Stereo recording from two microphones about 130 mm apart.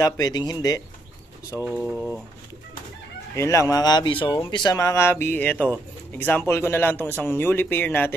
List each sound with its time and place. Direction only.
0.0 s speech: 30° left (ahead or behind)
1.6 s speech: 10° right (ahead or behind)
3.3 s speech: 25° left (ahead or behind)